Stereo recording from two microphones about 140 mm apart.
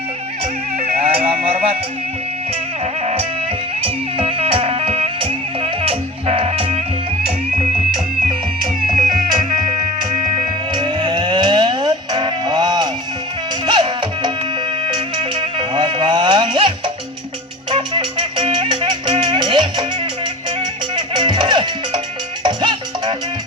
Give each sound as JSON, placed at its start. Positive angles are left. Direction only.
{"t": 0.8, "sound": "music", "side_deg": -45}
{"t": 3.8, "sound": "music", "side_deg": -40}
{"t": 9.0, "sound": "music", "side_deg": -35}
{"t": 20.9, "sound": "music", "side_deg": -35}